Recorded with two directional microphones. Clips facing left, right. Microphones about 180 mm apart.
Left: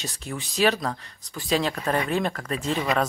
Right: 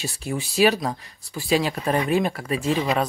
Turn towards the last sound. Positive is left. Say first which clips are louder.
# right 2 dB
turn(degrees=-10)  # may be behind; listen again after turning